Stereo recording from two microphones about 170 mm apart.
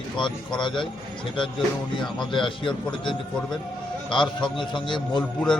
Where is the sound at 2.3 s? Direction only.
30° left (ahead or behind).